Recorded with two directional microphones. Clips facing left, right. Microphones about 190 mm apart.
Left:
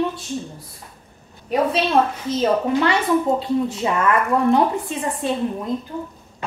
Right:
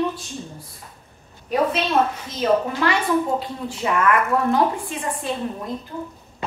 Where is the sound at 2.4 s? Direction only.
25° left (ahead or behind).